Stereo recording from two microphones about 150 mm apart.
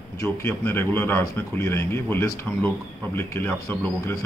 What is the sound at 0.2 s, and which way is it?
Speech, 15° left (ahead or behind).